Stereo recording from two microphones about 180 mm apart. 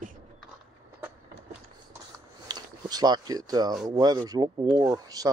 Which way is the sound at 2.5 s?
20° right (ahead or behind).